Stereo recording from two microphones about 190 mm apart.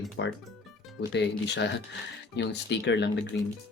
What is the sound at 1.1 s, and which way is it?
Speech, 65° left (ahead or behind).